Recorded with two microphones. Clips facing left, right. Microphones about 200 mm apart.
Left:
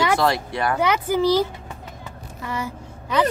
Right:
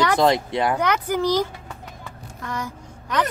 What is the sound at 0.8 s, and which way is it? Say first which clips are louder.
Speech: left 2 dB; 10° left (ahead or behind).